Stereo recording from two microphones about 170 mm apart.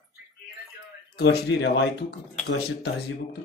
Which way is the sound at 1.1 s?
90° left.